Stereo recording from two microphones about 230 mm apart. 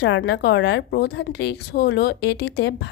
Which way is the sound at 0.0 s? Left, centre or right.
Left.